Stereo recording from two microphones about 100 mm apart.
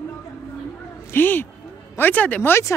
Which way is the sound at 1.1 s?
20° left (ahead or behind).